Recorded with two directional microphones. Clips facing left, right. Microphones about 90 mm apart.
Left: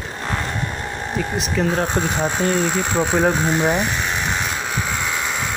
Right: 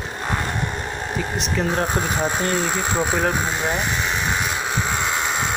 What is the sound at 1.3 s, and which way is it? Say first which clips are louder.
Speech: left 2 dB; centre (ahead or behind).